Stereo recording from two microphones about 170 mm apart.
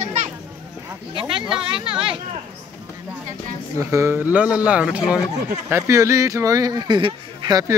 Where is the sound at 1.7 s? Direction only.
30° right (ahead or behind).